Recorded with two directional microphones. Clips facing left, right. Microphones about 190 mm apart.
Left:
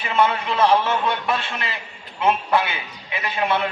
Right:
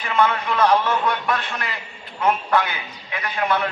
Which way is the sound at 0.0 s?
25° left (ahead or behind).